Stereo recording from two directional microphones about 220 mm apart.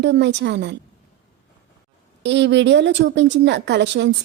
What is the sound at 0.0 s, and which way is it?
Speech, 50° right (ahead or behind).